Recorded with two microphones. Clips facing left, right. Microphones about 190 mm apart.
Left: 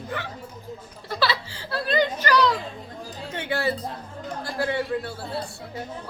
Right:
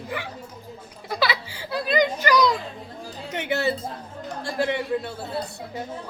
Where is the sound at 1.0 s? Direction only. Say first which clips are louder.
Even; 10° right (ahead or behind).